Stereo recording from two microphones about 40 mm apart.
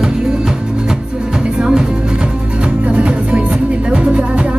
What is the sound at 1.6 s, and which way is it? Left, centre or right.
Music, centre.